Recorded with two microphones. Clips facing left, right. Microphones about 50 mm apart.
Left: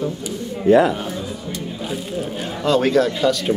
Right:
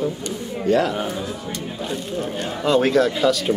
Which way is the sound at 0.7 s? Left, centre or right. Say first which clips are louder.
Left 5 dB; centre.